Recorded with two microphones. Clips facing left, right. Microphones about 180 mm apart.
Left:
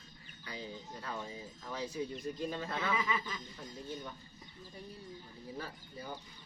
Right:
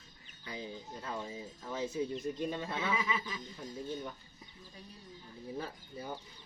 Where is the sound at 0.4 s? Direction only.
20° right (ahead or behind).